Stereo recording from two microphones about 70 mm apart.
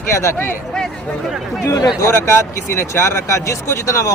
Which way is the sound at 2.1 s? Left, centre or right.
Left.